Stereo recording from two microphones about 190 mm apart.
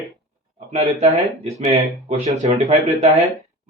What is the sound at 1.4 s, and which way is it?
Speech, 35° right (ahead or behind).